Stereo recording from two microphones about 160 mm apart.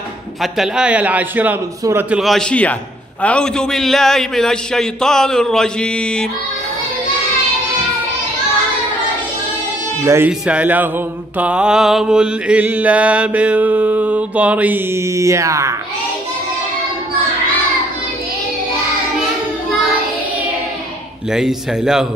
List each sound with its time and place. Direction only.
0.4 s mantra: 5° right (ahead or behind)
3.2 s a man's voice: 5° left (ahead or behind)
10.0 s mantra: 15° right (ahead or behind)
21.3 s a man's voice: 5° right (ahead or behind)